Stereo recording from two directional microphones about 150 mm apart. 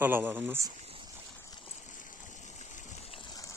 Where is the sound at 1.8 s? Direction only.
60° left (ahead or behind).